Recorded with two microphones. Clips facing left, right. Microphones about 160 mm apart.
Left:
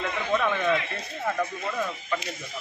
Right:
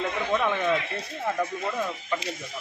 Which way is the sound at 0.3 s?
10° right (ahead or behind).